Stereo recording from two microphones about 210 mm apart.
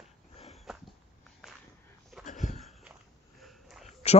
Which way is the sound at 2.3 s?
35° left (ahead or behind).